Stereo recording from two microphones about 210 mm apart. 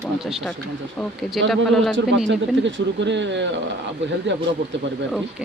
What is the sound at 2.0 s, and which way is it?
Speech, 60° right (ahead or behind).